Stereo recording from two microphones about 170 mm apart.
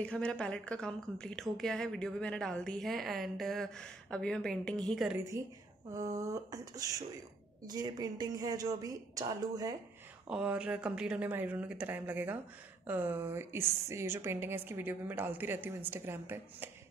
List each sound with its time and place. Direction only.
0.0 s a woman's voice: 5° left (ahead or behind)
5.1 s a woman's voice: 15° right (ahead or behind)
10.2 s a woman's voice: 5° right (ahead or behind)